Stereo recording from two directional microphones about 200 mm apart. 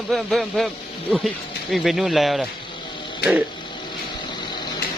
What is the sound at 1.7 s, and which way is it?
Speech, centre (ahead or behind).